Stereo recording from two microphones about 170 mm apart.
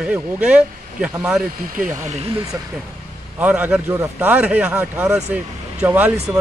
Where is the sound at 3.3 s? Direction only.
10° right (ahead or behind).